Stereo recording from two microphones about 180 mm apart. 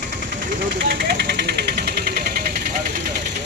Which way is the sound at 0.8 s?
55° right (ahead or behind).